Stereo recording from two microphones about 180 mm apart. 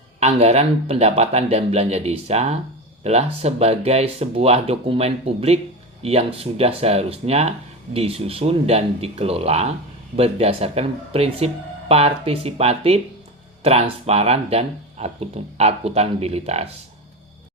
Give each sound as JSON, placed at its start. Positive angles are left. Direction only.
{"t": 0.2, "sound": "speech", "side_deg": -35}